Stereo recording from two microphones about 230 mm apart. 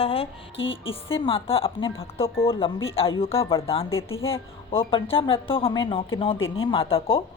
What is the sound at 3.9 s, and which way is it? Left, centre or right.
Speech, left.